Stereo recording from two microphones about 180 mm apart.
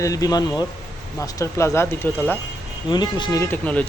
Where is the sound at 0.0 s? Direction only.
20° left (ahead or behind).